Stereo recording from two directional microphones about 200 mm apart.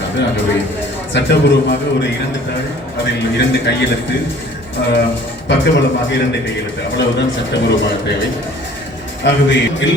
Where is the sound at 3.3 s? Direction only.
60° left (ahead or behind).